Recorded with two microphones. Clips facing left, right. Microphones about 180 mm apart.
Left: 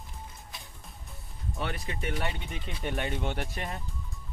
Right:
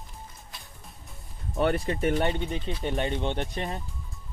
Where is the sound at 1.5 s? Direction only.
55° right (ahead or behind); by 3.8 s 25° right (ahead or behind).